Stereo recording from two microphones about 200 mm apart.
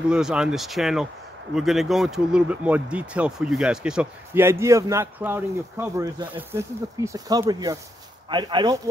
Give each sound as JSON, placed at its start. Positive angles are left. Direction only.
{"t": 0.1, "sound": "speech", "side_deg": -5}